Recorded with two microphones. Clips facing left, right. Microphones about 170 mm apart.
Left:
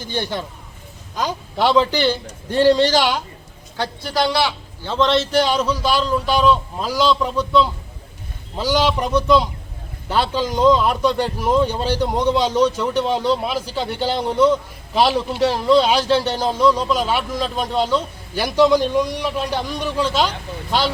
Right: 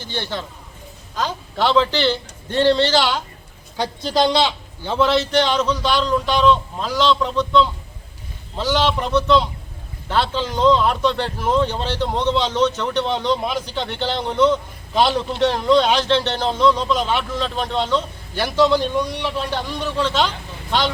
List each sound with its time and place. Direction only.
0.0 s a man's voice: 15° left (ahead or behind)
3.8 s a man's voice: 20° right (ahead or behind)
5.0 s a man's voice: centre (ahead or behind)